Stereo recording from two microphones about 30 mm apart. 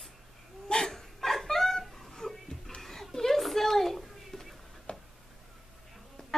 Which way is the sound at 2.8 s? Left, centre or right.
Centre.